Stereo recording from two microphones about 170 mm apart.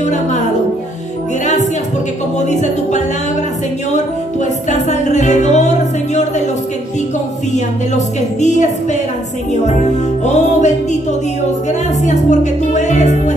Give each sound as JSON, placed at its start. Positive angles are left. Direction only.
{"t": 0.0, "sound": "a woman's voice", "side_deg": 45}
{"t": 1.4, "sound": "music", "side_deg": 45}
{"t": 2.3, "sound": "a woman's voice", "side_deg": 45}
{"t": 4.6, "sound": "music", "side_deg": 45}
{"t": 8.4, "sound": "a woman's voice", "side_deg": 45}
{"t": 10.2, "sound": "a woman's voice", "side_deg": 45}
{"t": 12.0, "sound": "a woman's voice", "side_deg": 45}